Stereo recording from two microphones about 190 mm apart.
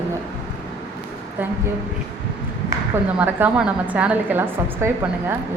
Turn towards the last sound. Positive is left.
turn(degrees=-10)  # may be behind; listen again after turning